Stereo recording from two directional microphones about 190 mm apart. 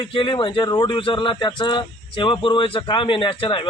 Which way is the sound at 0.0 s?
25° left (ahead or behind).